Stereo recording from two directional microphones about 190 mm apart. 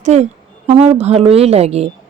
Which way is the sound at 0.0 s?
35° right (ahead or behind).